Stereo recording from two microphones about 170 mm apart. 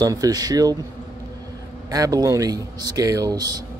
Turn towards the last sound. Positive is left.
turn(degrees=-20)  # may be behind; listen again after turning